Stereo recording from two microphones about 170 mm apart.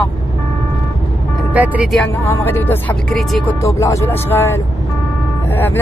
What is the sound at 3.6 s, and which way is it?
Speech, 20° left (ahead or behind).